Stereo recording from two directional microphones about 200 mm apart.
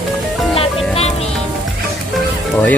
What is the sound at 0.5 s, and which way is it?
Music, 30° left (ahead or behind).